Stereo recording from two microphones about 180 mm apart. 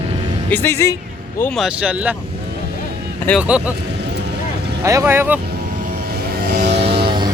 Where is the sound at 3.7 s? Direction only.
70° right (ahead or behind).